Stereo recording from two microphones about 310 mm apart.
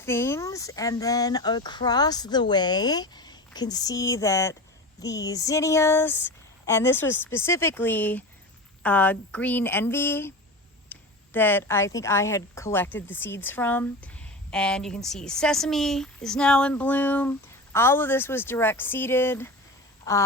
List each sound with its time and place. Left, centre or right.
0.0 s a woman's voice: centre
10.9 s a sound: centre
11.3 s a woman's voice: centre